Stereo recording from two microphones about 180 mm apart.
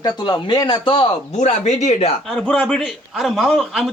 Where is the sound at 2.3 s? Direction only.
5° left (ahead or behind).